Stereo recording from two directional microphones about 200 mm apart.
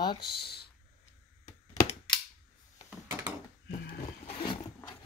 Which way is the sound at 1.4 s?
20° left (ahead or behind).